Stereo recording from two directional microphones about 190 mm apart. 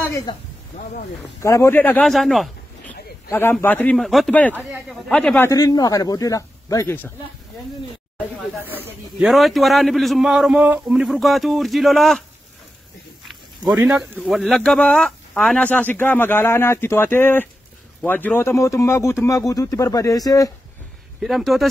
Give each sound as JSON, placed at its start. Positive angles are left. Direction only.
{"t": 0.1, "sound": "speech", "side_deg": 20}
{"t": 1.4, "sound": "speech", "side_deg": 15}
{"t": 3.3, "sound": "a man's voice", "side_deg": 10}
{"t": 5.5, "sound": "speech", "side_deg": 20}
{"t": 8.4, "sound": "speech", "side_deg": -5}
{"t": 13.8, "sound": "speech", "side_deg": -5}
{"t": 21.2, "sound": "speech", "side_deg": 0}